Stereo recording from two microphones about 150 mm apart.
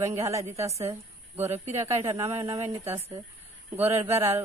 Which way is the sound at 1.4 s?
45° right (ahead or behind).